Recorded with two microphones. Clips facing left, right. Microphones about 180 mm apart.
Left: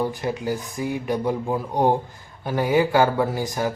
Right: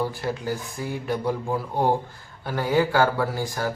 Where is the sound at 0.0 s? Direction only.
15° left (ahead or behind).